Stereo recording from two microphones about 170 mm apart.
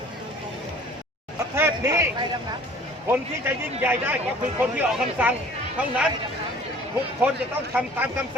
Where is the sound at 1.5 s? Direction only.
15° right (ahead or behind).